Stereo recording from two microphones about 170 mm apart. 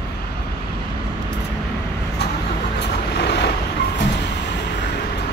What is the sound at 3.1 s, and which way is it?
Vehicle, 80° left.